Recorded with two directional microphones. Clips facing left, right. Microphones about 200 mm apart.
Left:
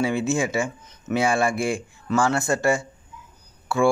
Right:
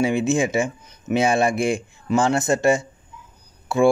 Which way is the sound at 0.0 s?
20° right (ahead or behind).